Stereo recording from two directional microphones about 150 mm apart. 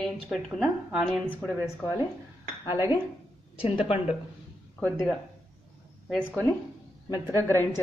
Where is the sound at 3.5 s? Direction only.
40° left (ahead or behind).